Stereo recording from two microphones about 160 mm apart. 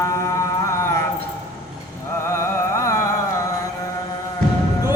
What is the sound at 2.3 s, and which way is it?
Music, 15° left (ahead or behind).